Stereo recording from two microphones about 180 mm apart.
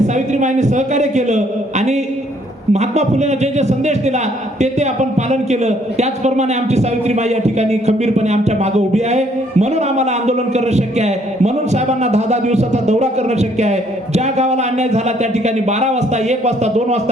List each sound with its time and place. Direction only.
0.0 s a man's voice: 40° right (ahead or behind)